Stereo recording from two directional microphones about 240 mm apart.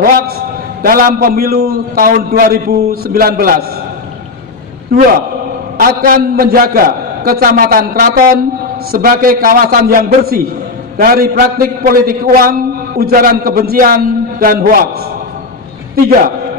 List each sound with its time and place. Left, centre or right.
0.8 s a man's voice: right
5.8 s a man's voice: right